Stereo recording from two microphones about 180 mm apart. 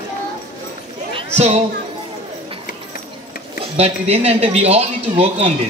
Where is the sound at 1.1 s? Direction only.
40° right (ahead or behind).